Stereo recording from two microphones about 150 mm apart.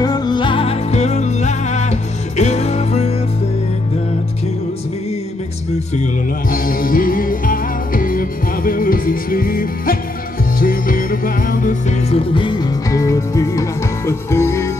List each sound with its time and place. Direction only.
0.0 s music: 25° left (ahead or behind); by 3.2 s 45° left (ahead or behind)
6.5 s music: 70° left (ahead or behind)
12.1 s music: 35° left (ahead or behind); by 14.7 s 20° left (ahead or behind)